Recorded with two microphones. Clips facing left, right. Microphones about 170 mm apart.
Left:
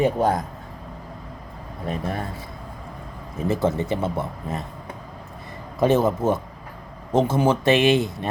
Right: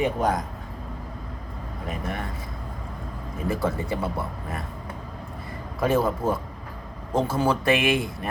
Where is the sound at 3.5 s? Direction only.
25° left (ahead or behind).